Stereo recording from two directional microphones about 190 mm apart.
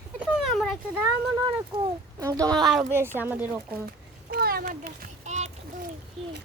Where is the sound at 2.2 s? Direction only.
20° right (ahead or behind).